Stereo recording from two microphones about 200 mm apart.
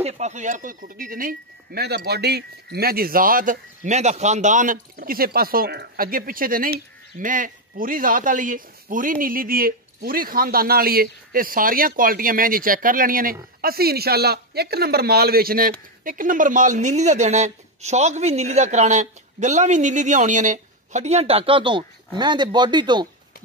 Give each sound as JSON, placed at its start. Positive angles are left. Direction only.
{"t": 0.0, "sound": "speech", "side_deg": -35}